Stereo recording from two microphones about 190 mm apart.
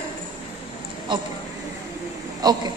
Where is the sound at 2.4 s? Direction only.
20° right (ahead or behind).